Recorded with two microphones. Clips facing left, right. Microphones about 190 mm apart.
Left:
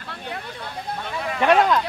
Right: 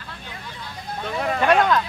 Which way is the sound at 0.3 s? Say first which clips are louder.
Left 6 dB; 60° left (ahead or behind).